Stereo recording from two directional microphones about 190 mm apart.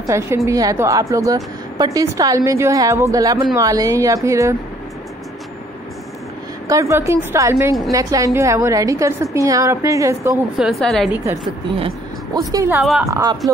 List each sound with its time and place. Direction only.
0.0 s a woman's voice: 15° right (ahead or behind)
6.7 s a woman's voice: 15° right (ahead or behind)
10.6 s a woman's voice: centre (ahead or behind)
12.4 s a woman's voice: 15° right (ahead or behind)